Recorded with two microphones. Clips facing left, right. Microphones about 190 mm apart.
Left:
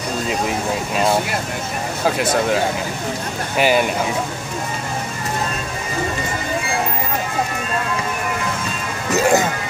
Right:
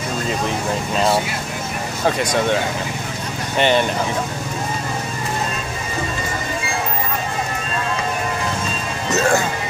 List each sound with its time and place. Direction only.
2.0 s speech: 5° left (ahead or behind)
9.1 s speech: 20° left (ahead or behind)